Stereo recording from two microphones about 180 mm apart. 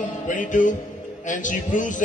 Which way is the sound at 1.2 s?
45° left (ahead or behind).